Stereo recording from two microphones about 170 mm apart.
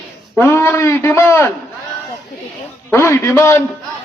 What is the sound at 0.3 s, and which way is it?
A man's voice, 15° left (ahead or behind).